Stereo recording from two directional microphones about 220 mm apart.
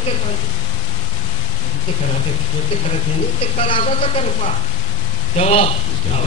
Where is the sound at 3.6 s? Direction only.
25° left (ahead or behind).